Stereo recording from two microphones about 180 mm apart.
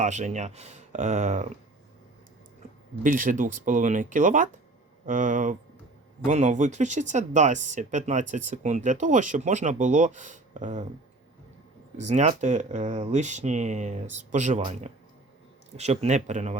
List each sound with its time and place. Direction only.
0.0 s speech: 40° right (ahead or behind)
3.0 s speech: 45° right (ahead or behind)
11.9 s speech: 40° right (ahead or behind)